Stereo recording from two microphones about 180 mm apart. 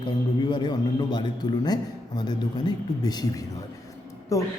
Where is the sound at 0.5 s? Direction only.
25° left (ahead or behind).